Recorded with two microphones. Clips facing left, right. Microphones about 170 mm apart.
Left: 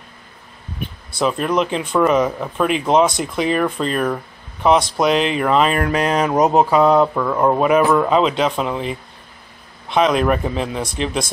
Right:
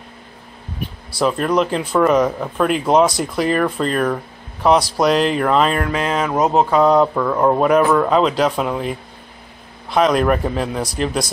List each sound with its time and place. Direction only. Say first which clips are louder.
1.2 s speech: right 1 dB; centre (ahead or behind)
5.8 s speech: left 2 dB; 20° left (ahead or behind)
6.6 s speech: right 2 dB; 5° left (ahead or behind)